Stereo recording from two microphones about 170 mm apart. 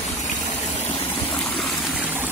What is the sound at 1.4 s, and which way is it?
Stream, 5° left (ahead or behind).